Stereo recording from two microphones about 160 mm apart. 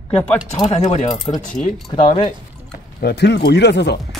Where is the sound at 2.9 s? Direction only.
90° left.